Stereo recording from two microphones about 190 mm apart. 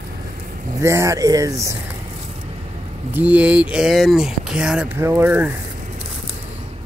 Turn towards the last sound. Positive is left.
turn(degrees=-10)  # may be behind; listen again after turning